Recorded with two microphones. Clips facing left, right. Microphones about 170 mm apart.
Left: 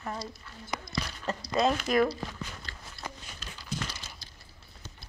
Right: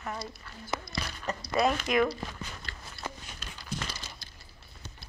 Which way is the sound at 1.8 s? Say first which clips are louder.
Left 1 dB; 35° left (ahead or behind).